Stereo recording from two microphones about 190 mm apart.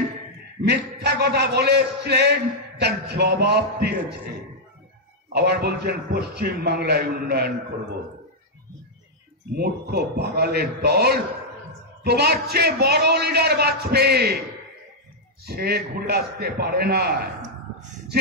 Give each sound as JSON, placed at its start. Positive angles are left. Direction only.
{"t": 0.6, "sound": "a man's voice", "side_deg": -60}
{"t": 5.3, "sound": "a man's voice", "side_deg": -60}
{"t": 9.6, "sound": "a man's voice", "side_deg": -55}
{"t": 15.4, "sound": "a man's voice", "side_deg": -55}